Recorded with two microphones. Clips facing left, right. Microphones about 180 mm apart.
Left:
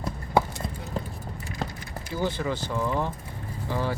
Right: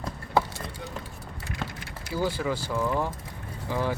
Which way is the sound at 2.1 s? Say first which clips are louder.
Even; 10° right (ahead or behind).